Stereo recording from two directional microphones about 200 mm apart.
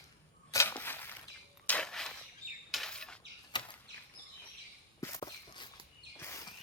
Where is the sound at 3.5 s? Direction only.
20° left (ahead or behind).